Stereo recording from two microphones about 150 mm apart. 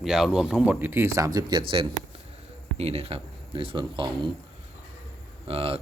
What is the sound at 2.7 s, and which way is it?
Speech, 45° right (ahead or behind).